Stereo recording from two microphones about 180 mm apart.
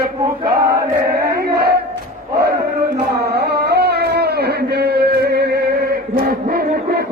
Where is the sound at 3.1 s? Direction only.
60° right (ahead or behind).